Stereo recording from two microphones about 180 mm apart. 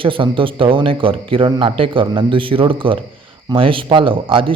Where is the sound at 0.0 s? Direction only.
30° right (ahead or behind).